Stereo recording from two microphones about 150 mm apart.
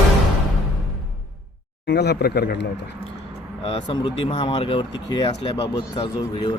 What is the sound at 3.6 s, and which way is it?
Speech, 40° left (ahead or behind).